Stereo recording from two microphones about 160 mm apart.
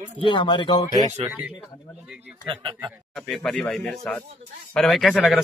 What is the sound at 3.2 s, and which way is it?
Speech, 5° left (ahead or behind).